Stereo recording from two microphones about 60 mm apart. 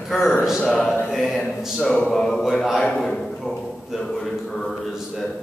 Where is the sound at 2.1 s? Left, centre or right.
Centre.